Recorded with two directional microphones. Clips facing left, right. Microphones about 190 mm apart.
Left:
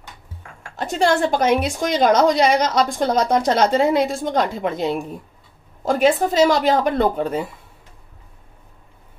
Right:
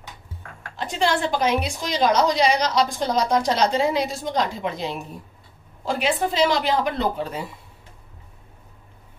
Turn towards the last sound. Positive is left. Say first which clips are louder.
# left 6 dB
turn(degrees=50)  # may be behind; listen again after turning